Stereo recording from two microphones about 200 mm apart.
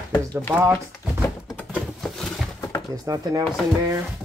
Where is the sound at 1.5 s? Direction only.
5° right (ahead or behind).